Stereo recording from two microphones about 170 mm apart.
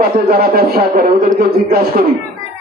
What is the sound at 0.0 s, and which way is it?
Speech, 65° right (ahead or behind).